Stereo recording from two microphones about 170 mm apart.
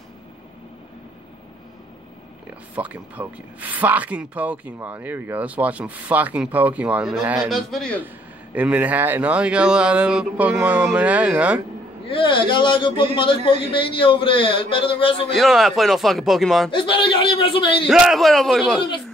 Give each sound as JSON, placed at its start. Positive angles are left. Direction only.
{"t": 2.7, "sound": "speech", "side_deg": -10}
{"t": 8.5, "sound": "speech", "side_deg": -10}
{"t": 12.1, "sound": "a man's voice", "side_deg": 30}
{"t": 15.3, "sound": "speech", "side_deg": 0}
{"t": 16.7, "sound": "a man's voice", "side_deg": 30}
{"t": 17.8, "sound": "speech", "side_deg": 0}